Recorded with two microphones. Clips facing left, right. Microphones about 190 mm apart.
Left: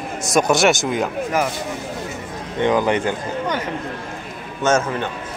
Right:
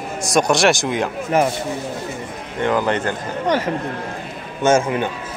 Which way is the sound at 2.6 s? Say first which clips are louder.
Left 1 dB; 15° left (ahead or behind).